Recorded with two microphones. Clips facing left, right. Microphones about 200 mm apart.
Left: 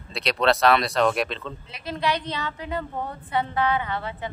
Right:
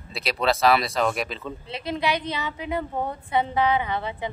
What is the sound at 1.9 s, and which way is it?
A woman's voice, 15° right (ahead or behind).